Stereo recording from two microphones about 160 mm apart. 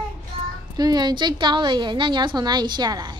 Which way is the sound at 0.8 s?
25° right (ahead or behind).